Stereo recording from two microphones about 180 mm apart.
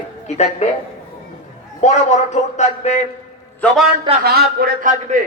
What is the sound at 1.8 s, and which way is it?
A man's voice, 40° left (ahead or behind).